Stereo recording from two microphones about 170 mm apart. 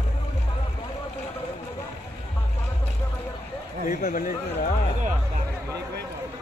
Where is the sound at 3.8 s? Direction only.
55° left (ahead or behind).